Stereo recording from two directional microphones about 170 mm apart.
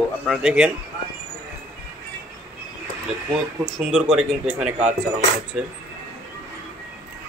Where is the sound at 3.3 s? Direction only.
Centre (ahead or behind).